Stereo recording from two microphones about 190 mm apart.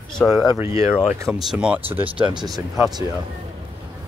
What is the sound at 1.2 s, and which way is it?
Speech, centre (ahead or behind).